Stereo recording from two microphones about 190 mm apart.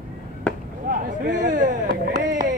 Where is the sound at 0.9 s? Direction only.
40° right (ahead or behind).